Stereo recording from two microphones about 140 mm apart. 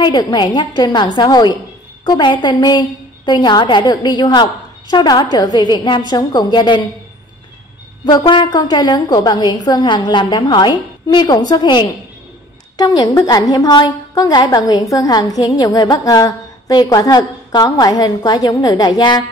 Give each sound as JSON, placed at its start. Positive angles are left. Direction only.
{"t": 0.0, "sound": "a woman's voice", "side_deg": 30}
{"t": 8.2, "sound": "a woman's voice", "side_deg": 35}